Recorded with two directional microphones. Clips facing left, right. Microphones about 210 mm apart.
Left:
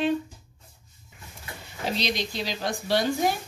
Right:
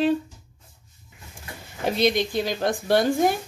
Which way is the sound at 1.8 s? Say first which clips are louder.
Right 7 dB; 55° right (ahead or behind).